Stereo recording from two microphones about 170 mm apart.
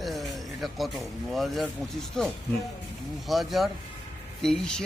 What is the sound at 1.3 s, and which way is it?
Speech, centre (ahead or behind).